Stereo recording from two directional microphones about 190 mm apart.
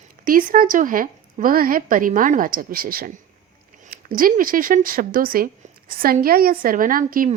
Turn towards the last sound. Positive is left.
turn(degrees=-45)  # may be behind; listen again after turning